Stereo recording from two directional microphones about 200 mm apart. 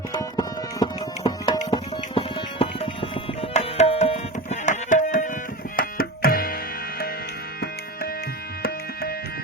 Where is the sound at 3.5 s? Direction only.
30° left (ahead or behind).